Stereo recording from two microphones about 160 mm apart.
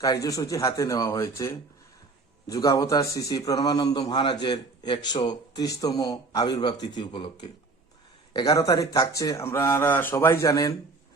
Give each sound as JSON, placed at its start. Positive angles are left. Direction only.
{"t": 0.0, "sound": "a man's voice", "side_deg": 20}
{"t": 2.5, "sound": "a man's voice", "side_deg": 20}